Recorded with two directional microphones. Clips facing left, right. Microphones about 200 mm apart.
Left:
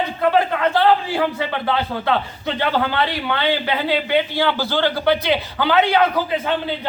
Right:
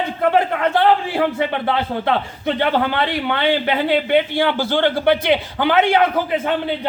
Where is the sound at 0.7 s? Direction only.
25° right (ahead or behind).